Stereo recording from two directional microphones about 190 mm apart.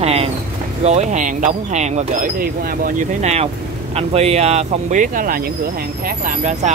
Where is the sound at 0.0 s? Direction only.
30° right (ahead or behind).